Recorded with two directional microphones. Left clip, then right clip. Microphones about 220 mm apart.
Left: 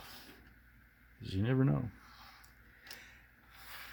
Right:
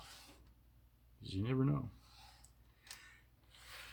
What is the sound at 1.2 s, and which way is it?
Speech, 45° left (ahead or behind).